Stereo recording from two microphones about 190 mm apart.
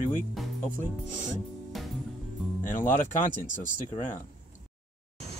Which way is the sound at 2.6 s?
45° left (ahead or behind).